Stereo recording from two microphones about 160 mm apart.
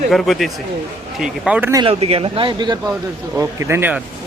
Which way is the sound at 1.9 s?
40° right (ahead or behind).